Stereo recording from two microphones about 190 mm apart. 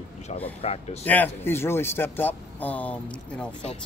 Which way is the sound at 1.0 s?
10° left (ahead or behind).